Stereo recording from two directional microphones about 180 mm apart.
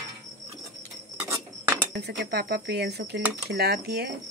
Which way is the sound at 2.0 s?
60° right (ahead or behind).